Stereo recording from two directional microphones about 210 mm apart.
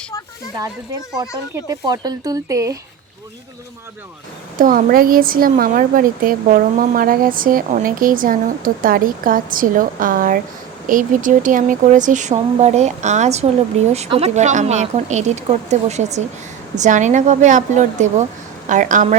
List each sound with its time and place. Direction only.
1.5 s speech: 20° right (ahead or behind)
4.5 s speech: 40° right (ahead or behind)